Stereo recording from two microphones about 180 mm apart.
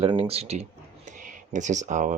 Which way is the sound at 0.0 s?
35° right (ahead or behind).